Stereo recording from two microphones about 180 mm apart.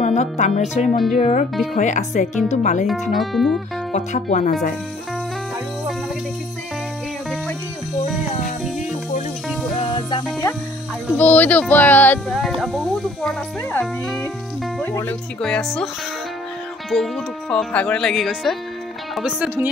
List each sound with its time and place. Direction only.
0.0 s speech: 40° left (ahead or behind)
3.1 s speech: centre (ahead or behind)
3.9 s speech: 40° left (ahead or behind)
9.8 s music: 25° left (ahead or behind)
11.1 s speech: 10° left (ahead or behind)
16.9 s speech: centre (ahead or behind)